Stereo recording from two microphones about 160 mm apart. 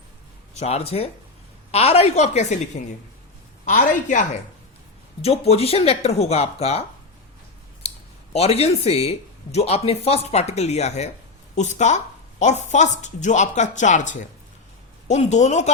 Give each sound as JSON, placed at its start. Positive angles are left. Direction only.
{"t": 0.5, "sound": "speech", "side_deg": 40}
{"t": 3.7, "sound": "speech", "side_deg": 55}
{"t": 5.2, "sound": "speech", "side_deg": 40}